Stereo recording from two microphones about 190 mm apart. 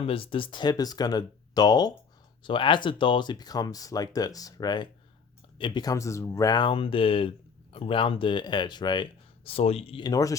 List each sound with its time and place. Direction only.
0.0 s speech: 30° left (ahead or behind)
10.1 s speech: 20° left (ahead or behind)